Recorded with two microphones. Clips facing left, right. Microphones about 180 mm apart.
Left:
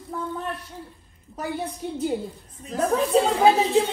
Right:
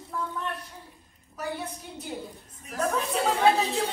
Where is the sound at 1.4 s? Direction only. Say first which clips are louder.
Left 5 dB; 30° left (ahead or behind).